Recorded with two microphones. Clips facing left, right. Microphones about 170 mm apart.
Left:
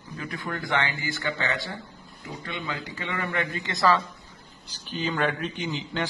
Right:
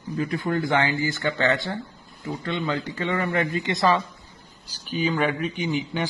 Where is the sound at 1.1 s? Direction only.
50° right (ahead or behind).